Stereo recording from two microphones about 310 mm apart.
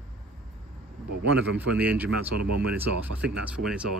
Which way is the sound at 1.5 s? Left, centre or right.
Centre.